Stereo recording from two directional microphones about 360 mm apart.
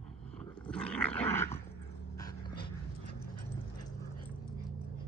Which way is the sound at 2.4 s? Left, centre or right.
Left.